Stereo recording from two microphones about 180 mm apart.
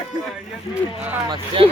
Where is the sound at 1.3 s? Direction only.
30° right (ahead or behind).